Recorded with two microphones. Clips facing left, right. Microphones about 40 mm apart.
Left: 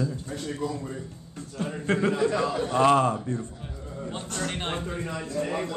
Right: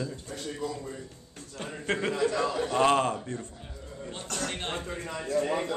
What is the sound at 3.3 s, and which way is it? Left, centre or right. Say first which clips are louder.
Speech: left 5 dB; right.